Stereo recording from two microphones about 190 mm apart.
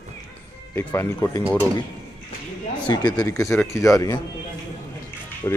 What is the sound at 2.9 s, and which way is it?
Speech, 20° left (ahead or behind).